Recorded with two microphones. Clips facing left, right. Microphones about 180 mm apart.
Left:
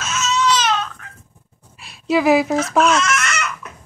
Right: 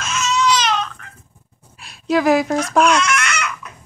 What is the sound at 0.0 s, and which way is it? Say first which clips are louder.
Crying: right 1 dB; 5° left (ahead or behind).